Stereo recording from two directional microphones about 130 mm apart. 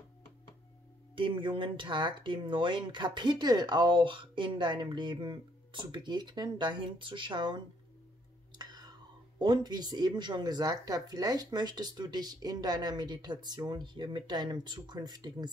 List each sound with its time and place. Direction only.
1.1 s speech: 40° right (ahead or behind)
8.5 s whispering: 30° right (ahead or behind)
9.4 s speech: 35° right (ahead or behind)